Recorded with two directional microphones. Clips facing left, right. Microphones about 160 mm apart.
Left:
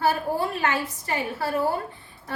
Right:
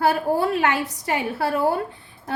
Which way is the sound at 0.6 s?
75° right (ahead or behind).